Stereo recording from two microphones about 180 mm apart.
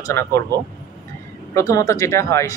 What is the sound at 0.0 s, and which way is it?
Speech, 15° left (ahead or behind).